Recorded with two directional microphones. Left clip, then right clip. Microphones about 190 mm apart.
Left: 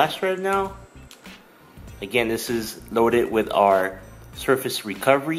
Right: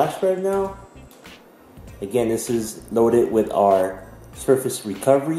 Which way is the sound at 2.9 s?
25° left (ahead or behind).